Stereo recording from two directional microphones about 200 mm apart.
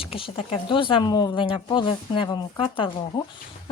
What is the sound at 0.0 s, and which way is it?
Speech, 25° left (ahead or behind).